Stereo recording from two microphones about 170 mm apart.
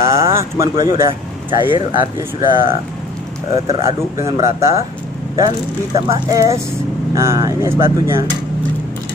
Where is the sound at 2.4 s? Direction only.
30° right (ahead or behind).